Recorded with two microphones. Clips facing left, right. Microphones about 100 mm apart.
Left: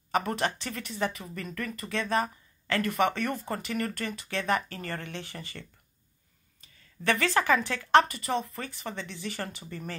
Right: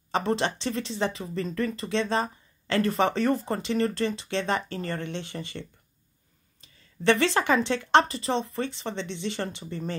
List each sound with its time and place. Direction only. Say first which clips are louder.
0.1 s speech: right 2 dB; 25° right (ahead or behind)
7.1 s speech: right 3 dB; 25° right (ahead or behind)